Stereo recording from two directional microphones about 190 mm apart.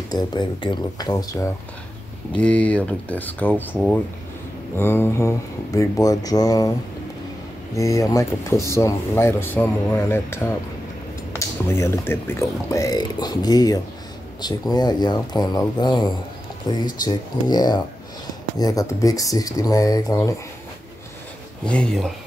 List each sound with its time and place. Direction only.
0.1 s speech: 25° left (ahead or behind)
2.3 s speech: 5° left (ahead or behind)
4.7 s speech: 10° left (ahead or behind)
7.7 s speech: 15° left (ahead or behind)
21.6 s speech: 5° left (ahead or behind)